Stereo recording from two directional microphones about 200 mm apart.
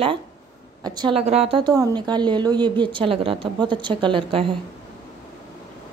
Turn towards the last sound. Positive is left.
turn(degrees=-25)  # may be behind; listen again after turning